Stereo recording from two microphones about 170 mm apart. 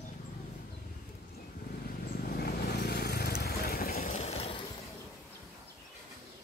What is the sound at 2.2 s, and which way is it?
Vehicle, 65° left (ahead or behind).